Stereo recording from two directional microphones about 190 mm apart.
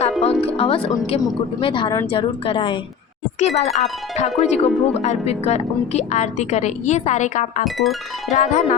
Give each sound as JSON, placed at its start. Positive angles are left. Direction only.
{"t": 0.2, "sound": "speech", "side_deg": 30}
{"t": 7.6, "sound": "music", "side_deg": 0}
{"t": 8.3, "sound": "speech", "side_deg": 40}